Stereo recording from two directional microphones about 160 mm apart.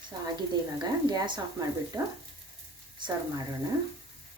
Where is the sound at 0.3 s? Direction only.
25° right (ahead or behind).